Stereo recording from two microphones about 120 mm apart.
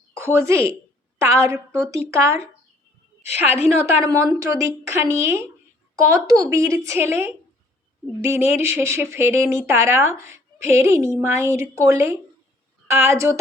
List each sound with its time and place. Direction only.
0.3 s speech: 25° right (ahead or behind)
3.2 s a woman's voice: 65° left (ahead or behind)
3.7 s speech: 20° right (ahead or behind)